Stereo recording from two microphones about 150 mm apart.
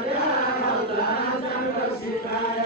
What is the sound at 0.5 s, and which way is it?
Chant, 90° left.